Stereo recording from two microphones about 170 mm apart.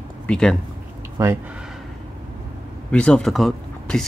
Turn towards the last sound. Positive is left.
turn(degrees=0)  # may be behind; listen again after turning